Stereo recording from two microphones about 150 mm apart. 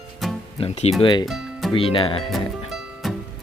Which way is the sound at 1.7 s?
35° left (ahead or behind).